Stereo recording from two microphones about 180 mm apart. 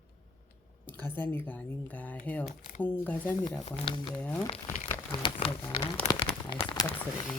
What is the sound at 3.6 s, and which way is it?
Speech, 30° left (ahead or behind).